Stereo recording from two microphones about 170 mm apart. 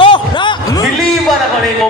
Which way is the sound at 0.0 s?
30° left (ahead or behind).